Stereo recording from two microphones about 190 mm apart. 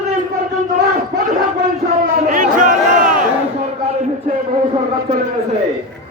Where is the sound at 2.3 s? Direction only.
45° right (ahead or behind).